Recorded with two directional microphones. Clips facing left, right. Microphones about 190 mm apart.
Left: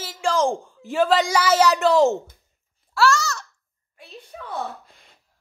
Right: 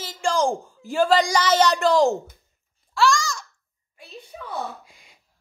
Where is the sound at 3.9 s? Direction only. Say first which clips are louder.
Even; 5° right (ahead or behind).